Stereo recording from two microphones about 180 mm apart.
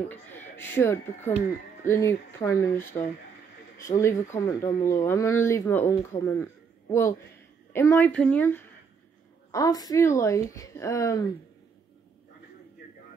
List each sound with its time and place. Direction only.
0.1 s speech: 10° left (ahead or behind)
9.5 s speech: 20° left (ahead or behind)